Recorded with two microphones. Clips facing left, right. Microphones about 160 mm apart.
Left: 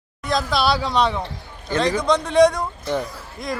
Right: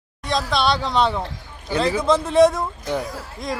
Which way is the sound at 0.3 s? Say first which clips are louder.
Even; centre (ahead or behind).